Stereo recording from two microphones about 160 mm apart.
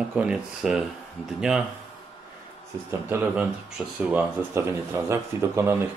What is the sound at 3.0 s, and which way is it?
Speech, 10° right (ahead or behind).